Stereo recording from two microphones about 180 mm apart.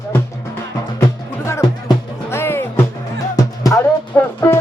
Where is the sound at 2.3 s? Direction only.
15° left (ahead or behind).